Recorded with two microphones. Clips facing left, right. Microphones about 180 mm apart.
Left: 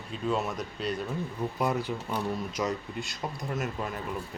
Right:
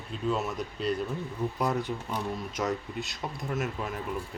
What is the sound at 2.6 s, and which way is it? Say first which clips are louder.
Speech: even; centre (ahead or behind).